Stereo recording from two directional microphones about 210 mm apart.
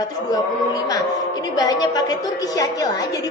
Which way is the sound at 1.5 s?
20° left (ahead or behind).